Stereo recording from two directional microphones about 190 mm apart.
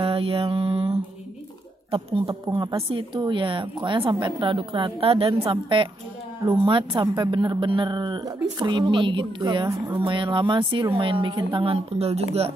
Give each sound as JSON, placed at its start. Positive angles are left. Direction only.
{"t": 0.0, "sound": "mantra", "side_deg": -30}
{"t": 1.9, "sound": "a woman's voice", "side_deg": -30}